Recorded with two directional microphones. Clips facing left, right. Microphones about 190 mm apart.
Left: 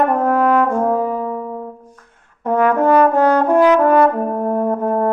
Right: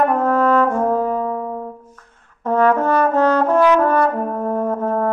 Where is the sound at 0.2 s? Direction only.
15° left (ahead or behind).